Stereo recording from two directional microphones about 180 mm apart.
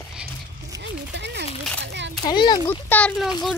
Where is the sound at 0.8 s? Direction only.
70° right (ahead or behind).